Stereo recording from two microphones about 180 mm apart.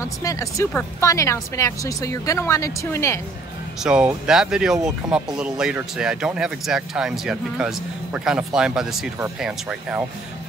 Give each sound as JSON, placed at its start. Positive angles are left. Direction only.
{"t": 0.0, "sound": "speech", "side_deg": 20}
{"t": 3.8, "sound": "speech", "side_deg": -5}